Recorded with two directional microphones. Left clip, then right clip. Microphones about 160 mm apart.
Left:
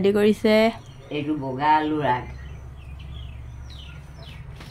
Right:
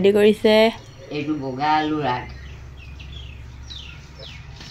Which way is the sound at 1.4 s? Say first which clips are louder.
Left 1 dB; 20° left (ahead or behind).